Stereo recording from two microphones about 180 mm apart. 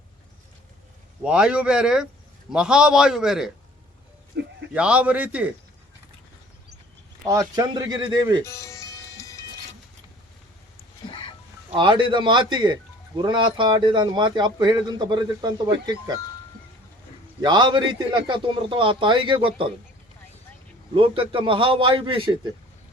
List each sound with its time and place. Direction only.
1.2 s a man's voice: 5° right (ahead or behind)
4.4 s sheep: 70° right (ahead or behind)
4.7 s a man's voice: 5° right (ahead or behind)
7.3 s speech: 20° right (ahead or behind)
8.4 s music: 15° left (ahead or behind)
11.0 s music: 30° left (ahead or behind)
11.8 s speech: 25° right (ahead or behind)
17.4 s speech: 25° right (ahead or behind)
20.9 s speech: 30° right (ahead or behind)